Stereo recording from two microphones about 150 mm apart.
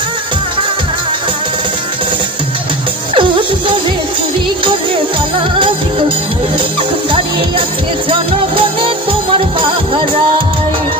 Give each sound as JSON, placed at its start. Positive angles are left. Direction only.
{"t": 3.2, "sound": "music", "side_deg": -35}
{"t": 5.5, "sound": "music", "side_deg": -35}
{"t": 8.1, "sound": "music", "side_deg": -35}